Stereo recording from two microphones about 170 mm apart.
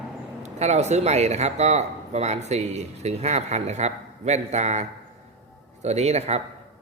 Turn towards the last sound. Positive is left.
turn(degrees=-40)  # may be behind; listen again after turning